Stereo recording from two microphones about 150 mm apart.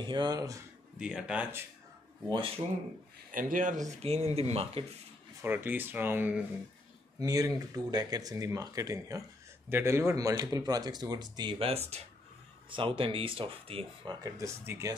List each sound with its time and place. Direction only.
0.0 s speech: 30° right (ahead or behind)
0.9 s speech: 5° right (ahead or behind)
3.3 s a man's voice: 65° right (ahead or behind)
4.0 s speech: 45° right (ahead or behind)
5.4 s speech: 15° right (ahead or behind); by 14.1 s 35° right (ahead or behind)
14.2 s speech: 20° right (ahead or behind)